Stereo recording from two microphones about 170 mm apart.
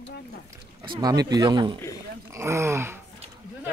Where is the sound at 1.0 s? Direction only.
20° right (ahead or behind).